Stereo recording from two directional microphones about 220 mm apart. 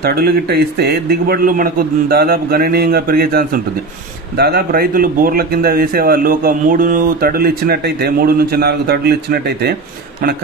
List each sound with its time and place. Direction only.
0.0 s speech: 45° right (ahead or behind)